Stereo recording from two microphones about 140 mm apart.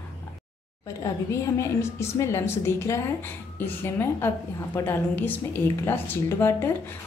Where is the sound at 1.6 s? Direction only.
20° left (ahead or behind).